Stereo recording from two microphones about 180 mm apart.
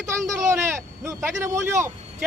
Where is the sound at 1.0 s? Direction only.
15° right (ahead or behind).